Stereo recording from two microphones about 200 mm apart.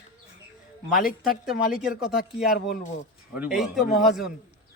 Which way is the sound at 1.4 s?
5° right (ahead or behind).